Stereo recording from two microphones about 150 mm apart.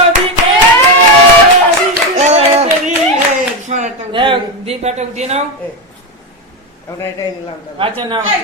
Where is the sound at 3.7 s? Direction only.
50° right (ahead or behind).